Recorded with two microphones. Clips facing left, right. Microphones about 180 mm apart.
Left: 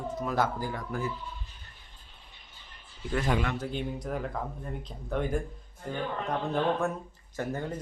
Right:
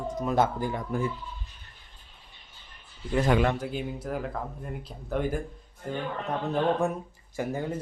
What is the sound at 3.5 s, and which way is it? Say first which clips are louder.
Speech: right 1 dB; 5° right (ahead or behind).